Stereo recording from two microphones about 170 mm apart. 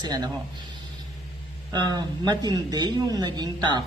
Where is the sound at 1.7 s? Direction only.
25° right (ahead or behind).